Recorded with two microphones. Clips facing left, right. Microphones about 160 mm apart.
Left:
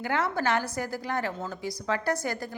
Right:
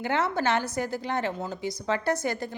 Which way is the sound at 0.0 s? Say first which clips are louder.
Right 2 dB; 25° right (ahead or behind).